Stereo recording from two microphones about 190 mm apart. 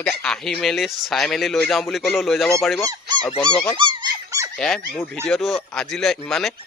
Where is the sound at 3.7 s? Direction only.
25° right (ahead or behind).